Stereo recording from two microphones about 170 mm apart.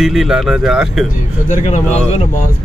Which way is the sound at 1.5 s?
45° left (ahead or behind).